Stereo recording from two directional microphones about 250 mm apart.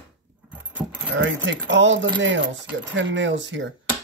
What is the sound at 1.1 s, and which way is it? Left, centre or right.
Speech, right.